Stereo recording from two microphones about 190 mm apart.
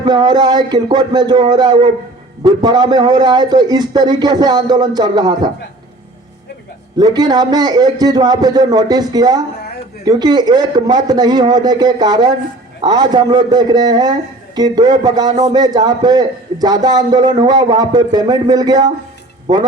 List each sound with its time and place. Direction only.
0.0 s a man's voice: 20° right (ahead or behind)
6.9 s a man's voice: 20° right (ahead or behind)